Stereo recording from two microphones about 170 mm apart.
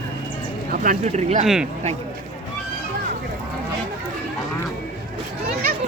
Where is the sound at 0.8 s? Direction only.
45° right (ahead or behind).